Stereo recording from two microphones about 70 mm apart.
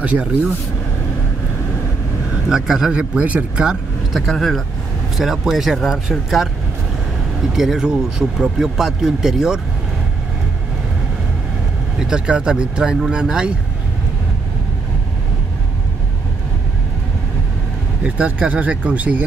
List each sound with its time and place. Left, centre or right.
0.0 s speech: centre
2.3 s speech: centre
4.3 s speech: centre
12.0 s speech: centre
18.0 s speech: centre